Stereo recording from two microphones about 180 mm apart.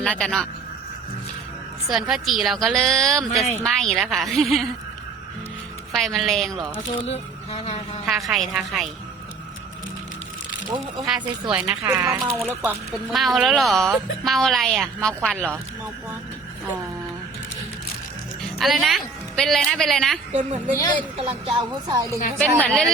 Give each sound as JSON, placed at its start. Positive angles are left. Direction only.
{"t": 0.0, "sound": "a woman's voice", "side_deg": 5}
{"t": 1.9, "sound": "a woman's voice", "side_deg": -5}
{"t": 5.9, "sound": "a woman's voice", "side_deg": 0}
{"t": 7.1, "sound": "speech", "side_deg": 35}
{"t": 8.0, "sound": "a woman's voice", "side_deg": 0}
{"t": 10.8, "sound": "speech", "side_deg": 0}
{"t": 13.1, "sound": "a woman's voice", "side_deg": 0}
{"t": 18.6, "sound": "a woman's voice", "side_deg": 0}
{"t": 20.3, "sound": "a woman's voice", "side_deg": -40}